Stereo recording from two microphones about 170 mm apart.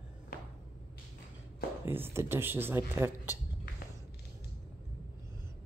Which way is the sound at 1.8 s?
15° right (ahead or behind).